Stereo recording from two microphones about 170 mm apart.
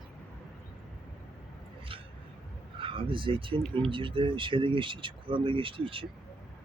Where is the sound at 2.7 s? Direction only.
30° right (ahead or behind).